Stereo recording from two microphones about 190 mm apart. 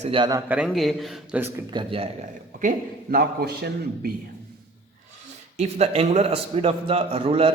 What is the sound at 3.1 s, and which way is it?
A man's voice, 55° right (ahead or behind).